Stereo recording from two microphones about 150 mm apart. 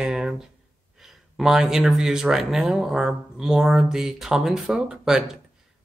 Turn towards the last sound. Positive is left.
turn(degrees=-5)  # may be behind; listen again after turning